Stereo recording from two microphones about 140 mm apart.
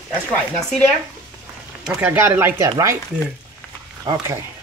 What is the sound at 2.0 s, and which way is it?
Speech, 15° right (ahead or behind).